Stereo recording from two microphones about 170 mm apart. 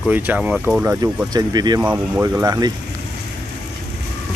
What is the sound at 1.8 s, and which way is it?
Speech, 10° right (ahead or behind).